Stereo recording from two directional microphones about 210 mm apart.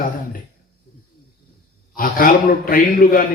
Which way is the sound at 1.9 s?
40° left (ahead or behind).